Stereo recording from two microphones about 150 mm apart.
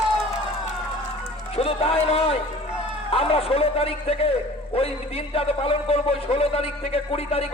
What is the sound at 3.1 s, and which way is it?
A man's voice, 40° left (ahead or behind).